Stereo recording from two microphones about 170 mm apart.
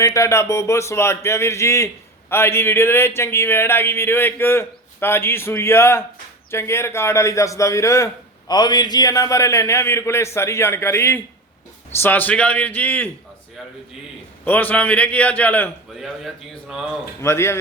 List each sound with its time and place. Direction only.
0.0 s a man's voice: 15° left (ahead or behind)
14.4 s a man's voice: 10° left (ahead or behind)
16.0 s a man's voice: centre (ahead or behind)
17.2 s a man's voice: 15° left (ahead or behind)